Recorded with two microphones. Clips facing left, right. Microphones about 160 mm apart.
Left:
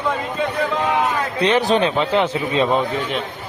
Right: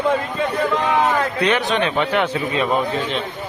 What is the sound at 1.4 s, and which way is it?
A man's voice, 35° left (ahead or behind).